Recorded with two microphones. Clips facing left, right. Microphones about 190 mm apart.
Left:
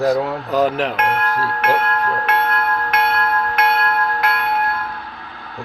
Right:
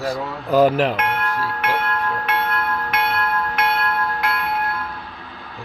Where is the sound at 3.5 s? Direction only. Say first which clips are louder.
Left 4 dB; 45° left (ahead or behind).